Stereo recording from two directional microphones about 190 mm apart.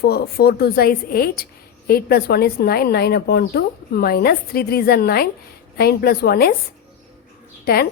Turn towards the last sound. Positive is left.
turn(degrees=55)  # may be behind; listen again after turning